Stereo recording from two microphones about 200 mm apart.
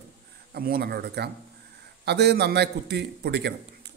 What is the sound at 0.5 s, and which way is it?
A man's voice, 50° right (ahead or behind).